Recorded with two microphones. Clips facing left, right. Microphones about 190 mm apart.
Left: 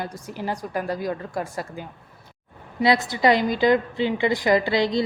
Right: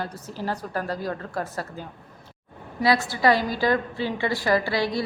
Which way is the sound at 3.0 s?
20° left (ahead or behind).